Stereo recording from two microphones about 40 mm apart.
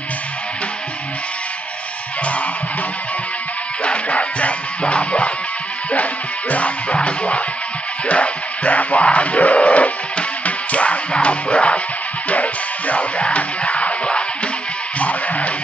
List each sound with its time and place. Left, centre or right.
3.8 s music: left
6.5 s music: left
15.0 s music: left